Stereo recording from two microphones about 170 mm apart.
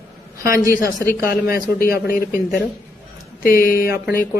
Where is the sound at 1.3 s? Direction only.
60° left (ahead or behind).